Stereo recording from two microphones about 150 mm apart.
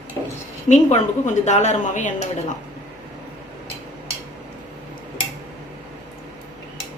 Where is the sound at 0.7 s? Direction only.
50° left (ahead or behind).